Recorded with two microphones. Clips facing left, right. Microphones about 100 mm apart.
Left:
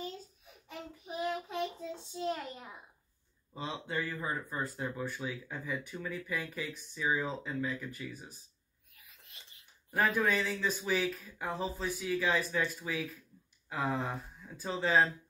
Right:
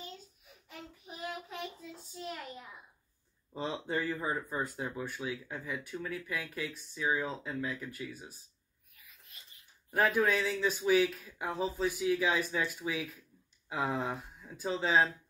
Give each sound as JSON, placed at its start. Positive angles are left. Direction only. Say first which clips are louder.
{"t": 1.5, "sound": "a sound", "louder": "left 6 dB", "side_deg": 30}
{"t": 3.5, "sound": "speech", "louder": "right 3 dB", "side_deg": -35}
{"t": 4.0, "sound": "speech", "louder": "right 2 dB", "side_deg": -20}
{"t": 9.8, "sound": "speech", "louder": "right 2 dB", "side_deg": -10}